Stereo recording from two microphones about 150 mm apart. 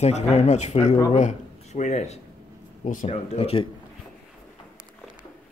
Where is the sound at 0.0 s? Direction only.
45° left (ahead or behind).